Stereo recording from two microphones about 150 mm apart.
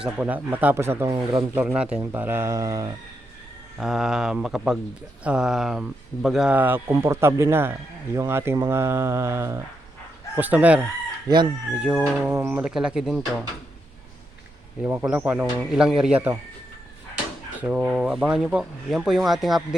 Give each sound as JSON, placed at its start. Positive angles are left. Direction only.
{"t": 0.0, "sound": "speech", "side_deg": -10}
{"t": 1.1, "sound": "speech", "side_deg": -30}
{"t": 1.5, "sound": "speech", "side_deg": -5}
{"t": 3.8, "sound": "speech", "side_deg": 0}
{"t": 11.3, "sound": "speech", "side_deg": -25}
{"t": 11.8, "sound": "speech", "side_deg": -10}
{"t": 14.8, "sound": "speech", "side_deg": -15}
{"t": 17.6, "sound": "speech", "side_deg": -10}